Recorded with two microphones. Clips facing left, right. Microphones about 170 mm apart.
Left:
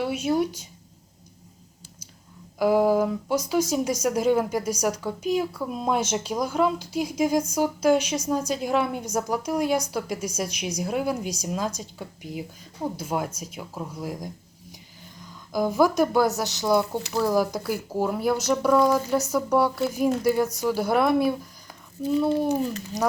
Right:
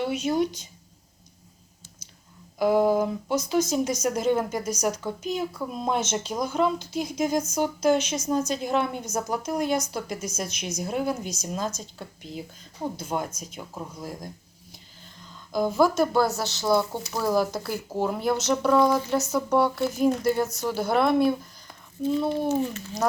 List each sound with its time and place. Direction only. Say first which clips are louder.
0.0 s speech: left 1 dB; 5° left (ahead or behind)
2.6 s speech: left 1 dB; 5° left (ahead or behind)
15.5 s speech: left 1 dB; 10° left (ahead or behind)
17.1 s speech: left 4 dB; centre (ahead or behind)
17.3 s speech: left 1 dB; 10° left (ahead or behind)